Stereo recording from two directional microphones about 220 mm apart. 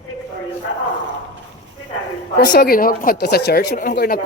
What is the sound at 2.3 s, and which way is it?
Speech, 45° left (ahead or behind).